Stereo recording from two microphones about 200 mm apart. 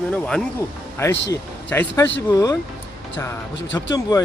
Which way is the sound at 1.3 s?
15° left (ahead or behind).